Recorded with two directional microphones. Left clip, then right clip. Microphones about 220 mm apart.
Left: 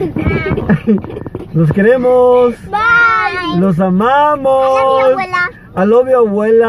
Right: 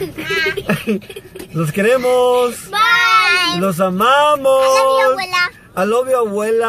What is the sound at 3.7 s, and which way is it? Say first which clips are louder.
Speech: left 1 dB; centre (ahead or behind).